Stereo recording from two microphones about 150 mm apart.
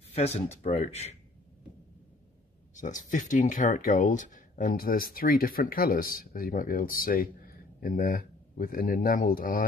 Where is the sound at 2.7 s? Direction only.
60° left (ahead or behind).